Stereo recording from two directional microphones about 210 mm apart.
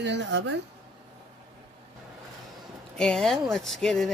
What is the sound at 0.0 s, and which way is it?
Speech, 55° right (ahead or behind).